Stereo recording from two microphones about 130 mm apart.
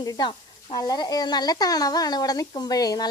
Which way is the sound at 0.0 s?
30° left (ahead or behind).